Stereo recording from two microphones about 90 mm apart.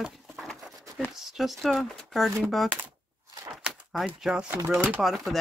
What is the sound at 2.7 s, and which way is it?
Speech, 20° right (ahead or behind).